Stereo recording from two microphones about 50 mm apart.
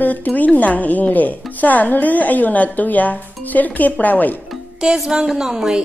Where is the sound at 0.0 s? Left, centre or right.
Left.